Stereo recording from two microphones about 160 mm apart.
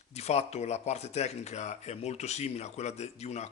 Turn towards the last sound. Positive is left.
turn(degrees=45)  # may be behind; listen again after turning